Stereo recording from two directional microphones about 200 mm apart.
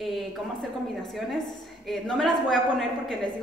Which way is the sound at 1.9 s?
5° left (ahead or behind).